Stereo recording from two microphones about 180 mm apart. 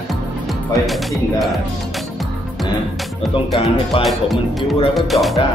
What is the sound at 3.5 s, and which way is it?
Speech, 30° left (ahead or behind).